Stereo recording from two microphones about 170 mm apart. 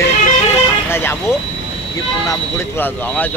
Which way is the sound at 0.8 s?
15° left (ahead or behind).